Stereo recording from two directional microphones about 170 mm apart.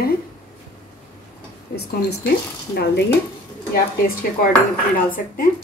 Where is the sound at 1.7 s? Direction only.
70° left (ahead or behind).